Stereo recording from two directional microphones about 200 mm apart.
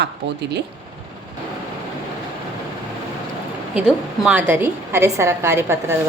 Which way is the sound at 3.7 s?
5° right (ahead or behind).